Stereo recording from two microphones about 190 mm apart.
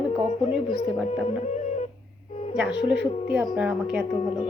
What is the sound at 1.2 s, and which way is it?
Music, 40° left (ahead or behind).